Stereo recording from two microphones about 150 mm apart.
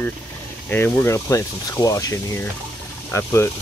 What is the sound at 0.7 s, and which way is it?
Speech, 15° left (ahead or behind).